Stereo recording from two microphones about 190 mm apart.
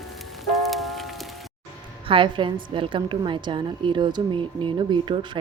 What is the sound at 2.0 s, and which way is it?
A woman's voice, 25° right (ahead or behind).